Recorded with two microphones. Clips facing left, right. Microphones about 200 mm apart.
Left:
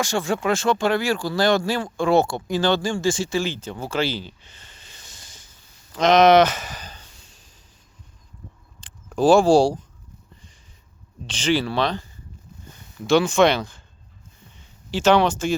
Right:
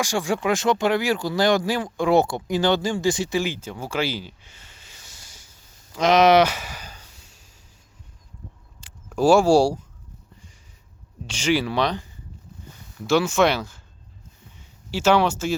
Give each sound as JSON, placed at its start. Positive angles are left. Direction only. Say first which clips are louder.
{"t": 0.0, "sound": "speech", "louder": "even", "side_deg": -10}
{"t": 5.9, "sound": "a sound", "louder": "left 2 dB", "side_deg": -10}
{"t": 8.8, "sound": "a sound", "louder": "right 2 dB", "side_deg": -10}
{"t": 9.1, "sound": "speech", "louder": "left 1 dB", "side_deg": -10}
{"t": 11.3, "sound": "speech", "louder": "even", "side_deg": -10}
{"t": 13.1, "sound": "speech", "louder": "left 2 dB", "side_deg": -5}
{"t": 14.8, "sound": "speech", "louder": "left 2 dB", "side_deg": -10}